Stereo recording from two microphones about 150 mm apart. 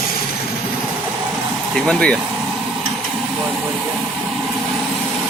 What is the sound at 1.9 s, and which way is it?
Speech, 5° left (ahead or behind).